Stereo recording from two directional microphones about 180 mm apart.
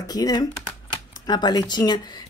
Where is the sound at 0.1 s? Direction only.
20° left (ahead or behind).